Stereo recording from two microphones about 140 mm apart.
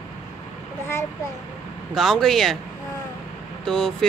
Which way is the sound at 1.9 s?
5° left (ahead or behind).